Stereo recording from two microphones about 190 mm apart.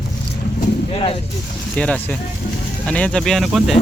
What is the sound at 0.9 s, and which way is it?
Speech, 30° left (ahead or behind).